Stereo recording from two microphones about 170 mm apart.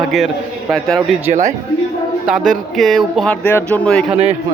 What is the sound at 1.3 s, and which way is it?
Speech, 45° right (ahead or behind).